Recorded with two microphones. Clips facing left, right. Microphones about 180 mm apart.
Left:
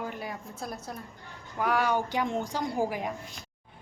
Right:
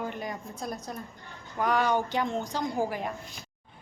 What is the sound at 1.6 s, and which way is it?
A woman's voice, 5° left (ahead or behind).